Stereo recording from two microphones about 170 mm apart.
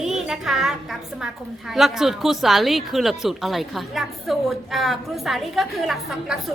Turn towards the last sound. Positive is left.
turn(degrees=0)  # may be behind; listen again after turning